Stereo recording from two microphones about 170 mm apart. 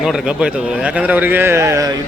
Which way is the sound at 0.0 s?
Centre (ahead or behind).